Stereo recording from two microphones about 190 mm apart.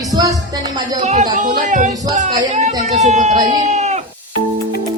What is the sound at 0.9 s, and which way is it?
Speech, 35° right (ahead or behind).